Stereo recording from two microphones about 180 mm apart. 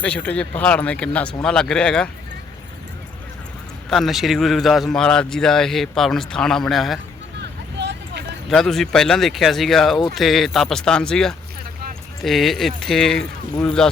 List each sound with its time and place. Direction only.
0.0 s speech: 10° left (ahead or behind)
3.8 s a man's voice: centre (ahead or behind)
7.3 s vehicle: 70° right (ahead or behind)
8.4 s a man's voice: centre (ahead or behind)